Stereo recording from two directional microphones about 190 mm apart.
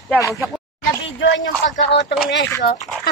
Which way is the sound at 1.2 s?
70° left (ahead or behind).